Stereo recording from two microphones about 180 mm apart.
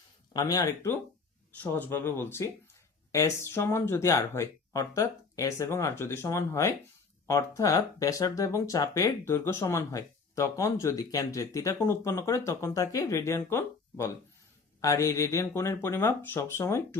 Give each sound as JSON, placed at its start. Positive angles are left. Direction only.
{"t": 0.3, "sound": "speech", "side_deg": 20}